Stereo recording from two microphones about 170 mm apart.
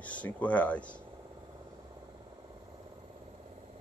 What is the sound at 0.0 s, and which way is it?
Speech, 10° left (ahead or behind).